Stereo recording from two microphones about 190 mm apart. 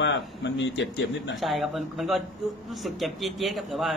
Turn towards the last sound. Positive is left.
turn(degrees=0)  # may be behind; listen again after turning